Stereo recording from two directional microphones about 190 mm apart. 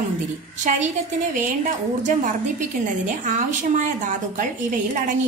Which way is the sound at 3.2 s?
45° right (ahead or behind).